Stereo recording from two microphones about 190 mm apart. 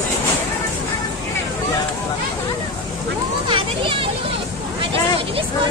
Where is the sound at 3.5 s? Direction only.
25° right (ahead or behind).